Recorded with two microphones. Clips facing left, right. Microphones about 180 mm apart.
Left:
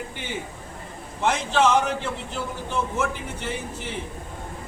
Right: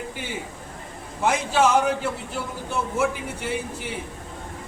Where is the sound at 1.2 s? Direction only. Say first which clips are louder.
Right 1 dB; 10° right (ahead or behind).